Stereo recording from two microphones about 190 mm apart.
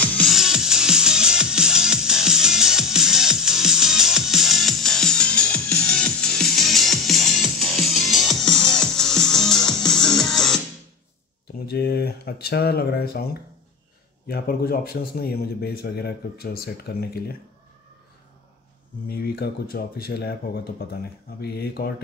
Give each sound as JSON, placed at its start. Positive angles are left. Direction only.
{"t": 0.0, "sound": "music", "side_deg": 5}
{"t": 11.7, "sound": "a man's voice", "side_deg": 55}
{"t": 19.0, "sound": "a man's voice", "side_deg": 55}